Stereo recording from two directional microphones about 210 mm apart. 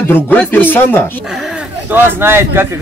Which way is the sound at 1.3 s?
Centre (ahead or behind).